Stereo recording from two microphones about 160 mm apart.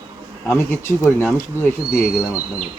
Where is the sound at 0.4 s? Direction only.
15° left (ahead or behind).